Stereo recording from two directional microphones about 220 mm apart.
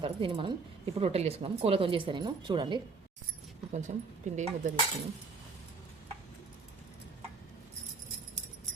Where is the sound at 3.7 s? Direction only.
35° right (ahead or behind).